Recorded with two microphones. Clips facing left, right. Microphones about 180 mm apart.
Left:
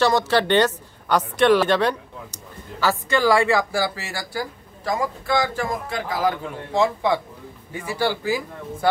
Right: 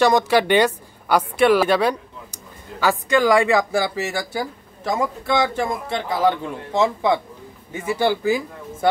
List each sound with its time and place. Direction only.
0.0 s a woman's voice: 15° right (ahead or behind)